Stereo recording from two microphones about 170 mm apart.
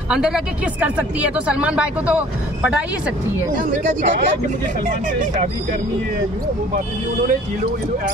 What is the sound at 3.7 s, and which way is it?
Speech, 45° right (ahead or behind).